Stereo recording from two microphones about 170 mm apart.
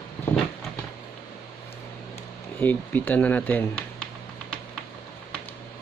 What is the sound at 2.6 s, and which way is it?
Speech, 10° left (ahead or behind).